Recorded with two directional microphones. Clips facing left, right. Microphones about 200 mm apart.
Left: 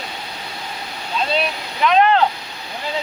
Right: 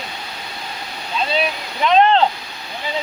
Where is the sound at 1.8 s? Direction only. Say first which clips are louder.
Right 1 dB; 25° right (ahead or behind).